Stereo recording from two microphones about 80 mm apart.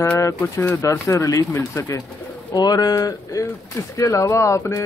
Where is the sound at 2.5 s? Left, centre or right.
Left.